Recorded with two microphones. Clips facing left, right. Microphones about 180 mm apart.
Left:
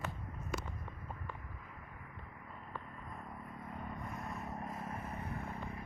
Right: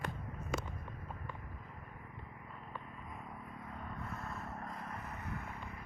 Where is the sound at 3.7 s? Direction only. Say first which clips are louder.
Left 1 dB; 10° left (ahead or behind); by 5.5 s 30° left (ahead or behind).